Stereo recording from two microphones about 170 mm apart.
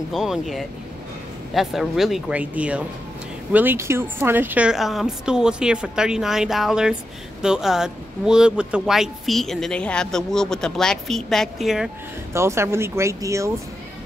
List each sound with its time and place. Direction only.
0.1 s speech: centre (ahead or behind)
12.3 s speech: 15° right (ahead or behind)